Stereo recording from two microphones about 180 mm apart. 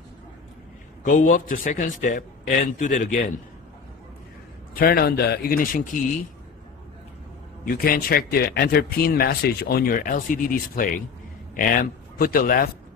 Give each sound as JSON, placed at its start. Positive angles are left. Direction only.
{"t": 1.0, "sound": "a man's voice", "side_deg": 45}
{"t": 4.7, "sound": "speech", "side_deg": 55}
{"t": 7.6, "sound": "speech", "side_deg": 55}